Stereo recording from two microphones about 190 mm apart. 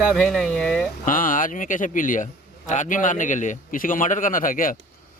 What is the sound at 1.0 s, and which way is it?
A man's voice, 45° left (ahead or behind).